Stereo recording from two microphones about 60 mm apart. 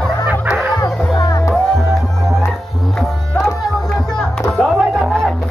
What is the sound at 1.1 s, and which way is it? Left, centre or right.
Music, left.